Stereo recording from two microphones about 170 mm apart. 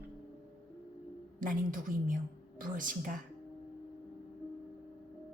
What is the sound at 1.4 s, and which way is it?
A woman's voice, 55° right (ahead or behind).